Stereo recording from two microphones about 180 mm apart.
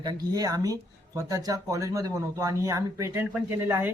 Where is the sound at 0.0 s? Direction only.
20° right (ahead or behind).